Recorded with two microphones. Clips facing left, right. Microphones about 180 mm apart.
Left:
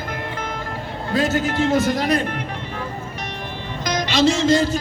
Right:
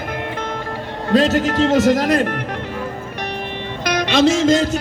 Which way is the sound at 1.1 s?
75° right (ahead or behind).